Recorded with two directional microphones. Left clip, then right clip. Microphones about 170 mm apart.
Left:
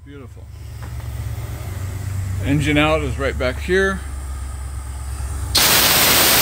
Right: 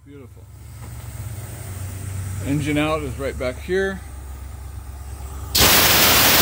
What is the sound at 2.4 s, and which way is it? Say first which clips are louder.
Speech: left 5 dB; centre (ahead or behind).